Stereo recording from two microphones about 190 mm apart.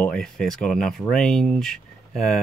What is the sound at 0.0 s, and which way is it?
Speech, 5° left (ahead or behind).